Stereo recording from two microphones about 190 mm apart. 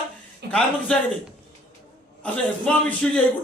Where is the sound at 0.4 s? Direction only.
60° right (ahead or behind).